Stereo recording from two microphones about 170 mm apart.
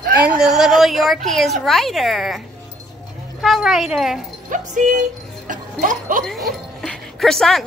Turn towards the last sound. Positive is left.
turn(degrees=0)  # may be behind; listen again after turning